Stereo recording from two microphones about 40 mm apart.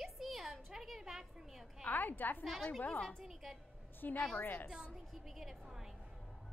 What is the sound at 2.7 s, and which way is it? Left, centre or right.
Speech, left.